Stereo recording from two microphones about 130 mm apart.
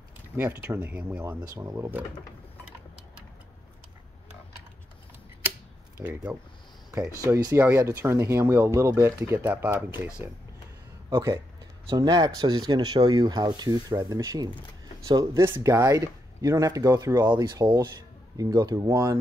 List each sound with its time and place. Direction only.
0.4 s speech: 15° right (ahead or behind)
1.5 s speech: 25° right (ahead or behind)
6.0 s speech: 15° right (ahead or behind)
6.9 s speech: 25° right (ahead or behind)
11.1 s speech: 25° right (ahead or behind)